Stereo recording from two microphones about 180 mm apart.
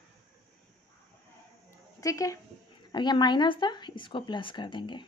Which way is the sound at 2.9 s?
25° left (ahead or behind).